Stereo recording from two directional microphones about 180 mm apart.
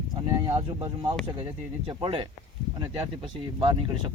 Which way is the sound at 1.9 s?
25° right (ahead or behind).